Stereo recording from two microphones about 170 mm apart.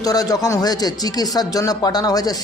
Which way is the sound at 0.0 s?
20° left (ahead or behind).